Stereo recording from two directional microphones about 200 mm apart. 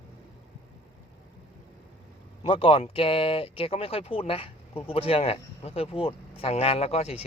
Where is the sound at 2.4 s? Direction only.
25° left (ahead or behind).